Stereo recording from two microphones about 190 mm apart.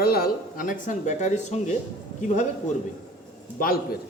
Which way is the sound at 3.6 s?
50° left (ahead or behind).